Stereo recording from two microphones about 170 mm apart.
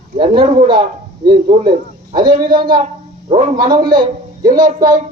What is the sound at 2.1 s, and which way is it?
Speech, 25° right (ahead or behind).